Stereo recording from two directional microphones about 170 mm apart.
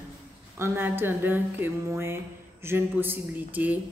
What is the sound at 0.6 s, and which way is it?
Speech, 15° right (ahead or behind).